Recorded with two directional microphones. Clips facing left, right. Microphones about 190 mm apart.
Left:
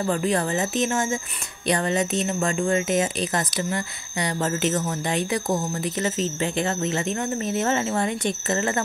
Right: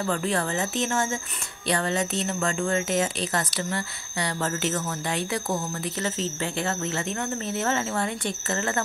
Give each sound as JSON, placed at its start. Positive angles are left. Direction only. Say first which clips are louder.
{"t": 0.0, "sound": "a woman's voice", "louder": "left 3 dB", "side_deg": 15}